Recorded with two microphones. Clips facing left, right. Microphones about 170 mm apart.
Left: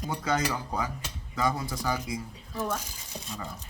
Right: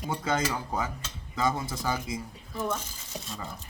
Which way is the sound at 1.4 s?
25° right (ahead or behind).